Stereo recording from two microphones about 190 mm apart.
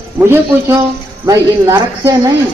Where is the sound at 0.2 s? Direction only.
15° right (ahead or behind).